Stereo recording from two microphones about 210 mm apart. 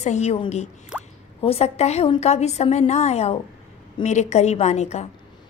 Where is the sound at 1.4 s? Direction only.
30° left (ahead or behind).